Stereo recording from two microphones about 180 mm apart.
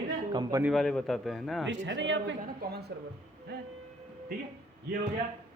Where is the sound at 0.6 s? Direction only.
Centre (ahead or behind).